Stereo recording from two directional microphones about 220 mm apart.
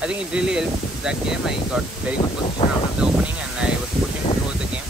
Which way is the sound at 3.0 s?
5° right (ahead or behind).